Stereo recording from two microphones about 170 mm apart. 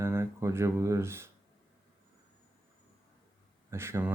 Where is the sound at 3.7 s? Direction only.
15° right (ahead or behind).